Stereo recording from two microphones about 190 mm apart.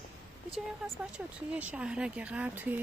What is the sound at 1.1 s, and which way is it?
Speech, 5° right (ahead or behind).